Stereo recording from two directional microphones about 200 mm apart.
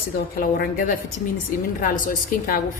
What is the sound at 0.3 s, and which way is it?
Speech, 45° left (ahead or behind).